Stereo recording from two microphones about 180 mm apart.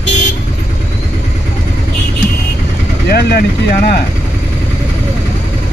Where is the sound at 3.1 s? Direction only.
60° left (ahead or behind).